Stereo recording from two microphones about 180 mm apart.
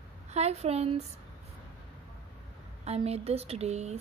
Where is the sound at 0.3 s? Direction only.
35° right (ahead or behind).